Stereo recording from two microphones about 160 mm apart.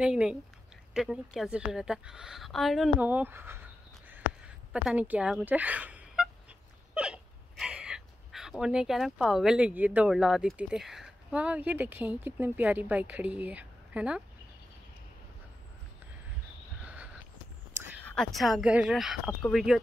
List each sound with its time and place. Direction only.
0.0 s a woman's voice: 5° right (ahead or behind)
3.0 s speech: 10° right (ahead or behind)
4.8 s speech: 10° right (ahead or behind)
16.8 s a sound: 10° right (ahead or behind)
18.0 s a woman's voice: 5° left (ahead or behind)